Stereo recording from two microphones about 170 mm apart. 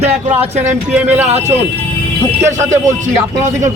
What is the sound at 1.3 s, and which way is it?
Speech, 40° right (ahead or behind).